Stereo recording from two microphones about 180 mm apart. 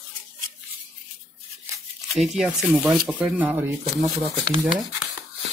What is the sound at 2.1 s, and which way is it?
Speech, 5° right (ahead or behind).